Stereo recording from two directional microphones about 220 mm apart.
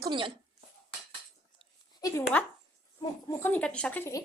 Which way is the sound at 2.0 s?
15° left (ahead or behind).